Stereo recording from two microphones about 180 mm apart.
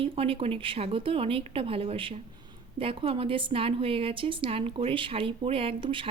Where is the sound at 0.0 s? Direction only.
30° right (ahead or behind).